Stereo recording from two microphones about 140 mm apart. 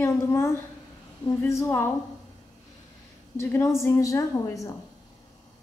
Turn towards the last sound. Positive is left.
turn(degrees=25)  # may be behind; listen again after turning